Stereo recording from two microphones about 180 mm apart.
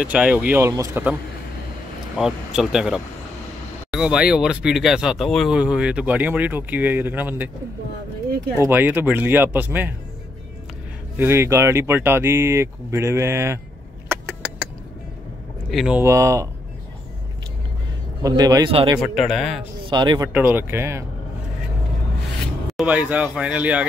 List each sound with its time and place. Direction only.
0.0 s speech: 5° right (ahead or behind)
2.1 s speech: 5° right (ahead or behind)
8.5 s speech: 10° right (ahead or behind)
11.1 s speech: 15° right (ahead or behind)
15.7 s speech: centre (ahead or behind)
16.0 s speech: 15° right (ahead or behind)
18.2 s speech: 20° right (ahead or behind)
18.9 s speech: centre (ahead or behind)
19.8 s speech: 25° right (ahead or behind)
20.3 s speech: 10° right (ahead or behind)
22.7 s speech: 5° right (ahead or behind)